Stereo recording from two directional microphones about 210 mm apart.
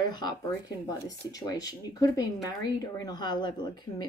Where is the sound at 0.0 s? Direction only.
20° left (ahead or behind).